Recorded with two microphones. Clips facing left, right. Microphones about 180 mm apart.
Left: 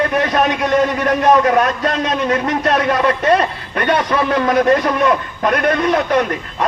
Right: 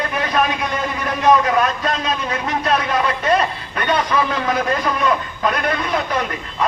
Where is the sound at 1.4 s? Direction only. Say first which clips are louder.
Left 4 dB; 50° left (ahead or behind).